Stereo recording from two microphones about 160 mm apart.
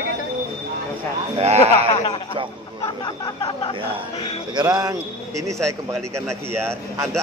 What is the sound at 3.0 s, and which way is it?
Speech, 25° left (ahead or behind).